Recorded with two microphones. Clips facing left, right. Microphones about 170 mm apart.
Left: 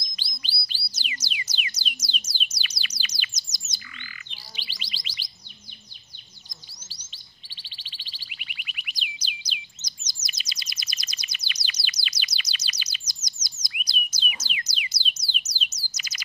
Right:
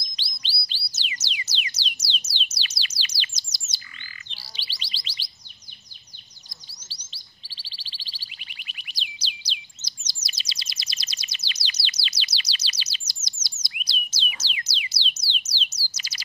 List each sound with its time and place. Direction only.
0.2 s bird: 25° right (ahead or behind)
4.3 s chirp tone: 35° right (ahead or behind)
7.1 s chirp: 35° right (ahead or behind)